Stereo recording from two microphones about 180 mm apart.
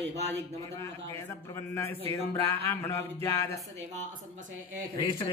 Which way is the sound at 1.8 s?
15° left (ahead or behind).